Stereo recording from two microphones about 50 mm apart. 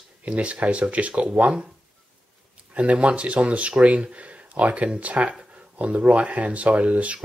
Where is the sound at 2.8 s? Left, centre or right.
Right.